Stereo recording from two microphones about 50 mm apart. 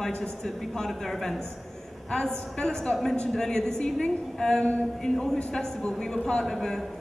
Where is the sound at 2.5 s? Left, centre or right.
Centre.